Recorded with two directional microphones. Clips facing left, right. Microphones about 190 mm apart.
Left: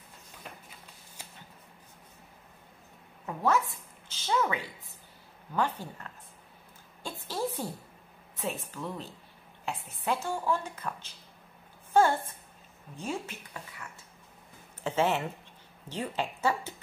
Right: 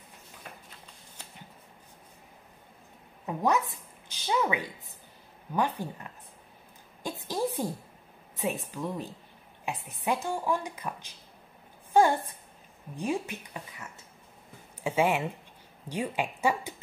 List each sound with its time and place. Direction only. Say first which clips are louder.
1.2 s shuffling cards: even; 10° left (ahead or behind)
3.3 s a woman's voice: right 1 dB; 15° right (ahead or behind)
7.0 s a sound: right 3 dB; 15° right (ahead or behind)
8.7 s speech: right 4 dB; 15° right (ahead or behind)